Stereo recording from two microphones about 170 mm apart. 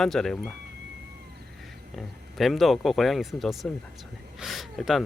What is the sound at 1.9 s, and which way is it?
A man's voice, centre (ahead or behind).